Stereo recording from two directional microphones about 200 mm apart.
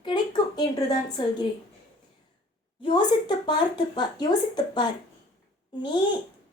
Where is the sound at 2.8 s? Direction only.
25° left (ahead or behind).